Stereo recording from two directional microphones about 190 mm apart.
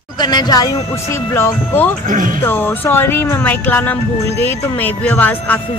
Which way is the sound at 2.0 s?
45° right (ahead or behind).